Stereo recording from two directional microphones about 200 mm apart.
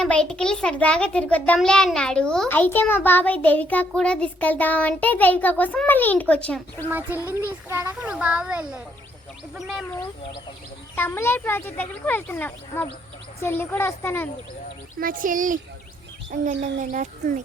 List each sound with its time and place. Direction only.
0.0 s a child's voice: 5° left (ahead or behind)
7.4 s a child's voice: 10° right (ahead or behind)
10.9 s a child's voice: 10° left (ahead or behind)
15.0 s speech: 45° right (ahead or behind)